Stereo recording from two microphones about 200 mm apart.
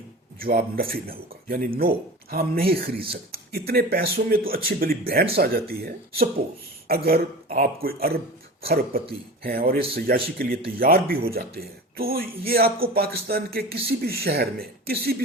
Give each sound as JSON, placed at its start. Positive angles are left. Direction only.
{"t": 0.3, "sound": "speech", "side_deg": -45}
{"t": 6.8, "sound": "speech", "side_deg": -50}